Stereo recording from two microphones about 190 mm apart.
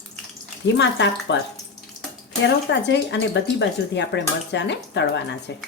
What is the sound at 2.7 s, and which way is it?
Speech, 65° left (ahead or behind).